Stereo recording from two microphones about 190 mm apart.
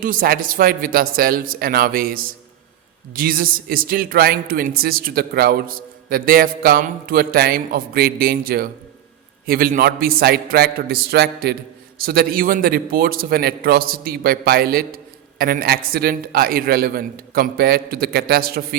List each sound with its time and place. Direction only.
0.0 s a man's voice: 45° right (ahead or behind)